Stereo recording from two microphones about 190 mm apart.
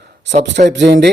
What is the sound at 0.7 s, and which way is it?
Speech, 65° right (ahead or behind).